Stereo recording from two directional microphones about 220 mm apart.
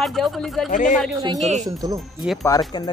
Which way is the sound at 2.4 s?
15° left (ahead or behind).